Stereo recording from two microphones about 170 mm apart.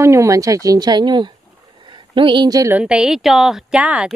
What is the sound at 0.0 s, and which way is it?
Speech, 15° right (ahead or behind).